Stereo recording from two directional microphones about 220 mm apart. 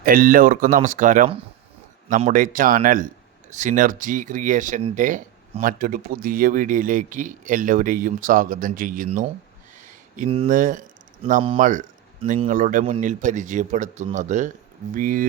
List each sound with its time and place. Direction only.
0.0 s speech: 40° right (ahead or behind)
9.8 s a sound: 35° right (ahead or behind)
10.2 s speech: 25° right (ahead or behind)
10.5 s speech: 35° right (ahead or behind)